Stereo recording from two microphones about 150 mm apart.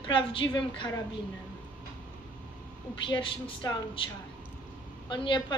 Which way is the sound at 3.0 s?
30° left (ahead or behind).